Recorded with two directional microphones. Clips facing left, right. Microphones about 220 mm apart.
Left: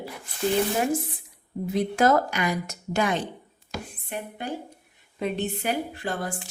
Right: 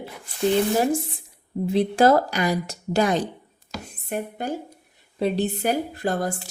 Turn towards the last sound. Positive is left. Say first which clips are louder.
# right 6 dB
turn(degrees=-40)  # may be behind; listen again after turning